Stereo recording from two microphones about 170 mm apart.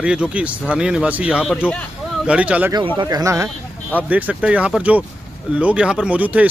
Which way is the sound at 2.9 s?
20° right (ahead or behind).